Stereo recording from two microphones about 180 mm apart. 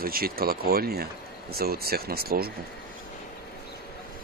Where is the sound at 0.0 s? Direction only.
55° right (ahead or behind).